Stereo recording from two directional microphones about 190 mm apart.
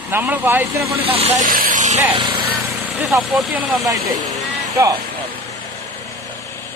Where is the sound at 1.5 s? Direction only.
45° right (ahead or behind).